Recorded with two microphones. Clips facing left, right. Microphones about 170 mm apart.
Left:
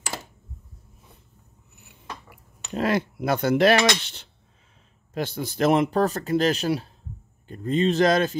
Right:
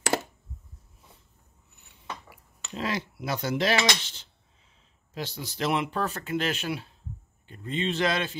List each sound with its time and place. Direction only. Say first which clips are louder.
2.7 s cutlery: left 8 dB; 55° left (ahead or behind)
5.1 s speech: left 7 dB; 55° left (ahead or behind)